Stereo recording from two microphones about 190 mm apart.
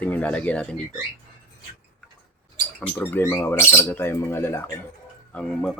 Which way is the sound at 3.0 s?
10° left (ahead or behind).